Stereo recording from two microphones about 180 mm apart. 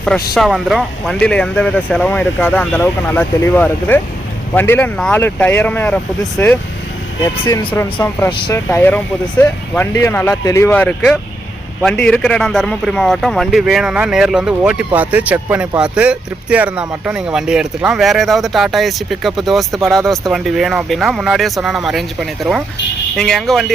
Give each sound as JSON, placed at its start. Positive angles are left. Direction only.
{"t": 0.3, "sound": "a man's voice", "side_deg": 0}